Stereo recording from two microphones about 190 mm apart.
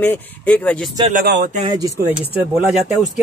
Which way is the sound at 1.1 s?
55° right (ahead or behind).